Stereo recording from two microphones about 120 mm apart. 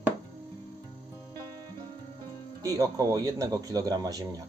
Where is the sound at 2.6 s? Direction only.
30° right (ahead or behind).